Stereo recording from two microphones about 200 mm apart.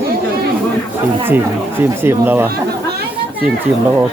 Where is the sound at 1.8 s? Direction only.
10° right (ahead or behind).